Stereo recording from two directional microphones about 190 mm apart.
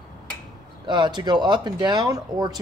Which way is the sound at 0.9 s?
25° right (ahead or behind).